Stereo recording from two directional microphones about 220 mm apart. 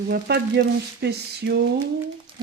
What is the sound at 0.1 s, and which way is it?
Speech, 45° right (ahead or behind).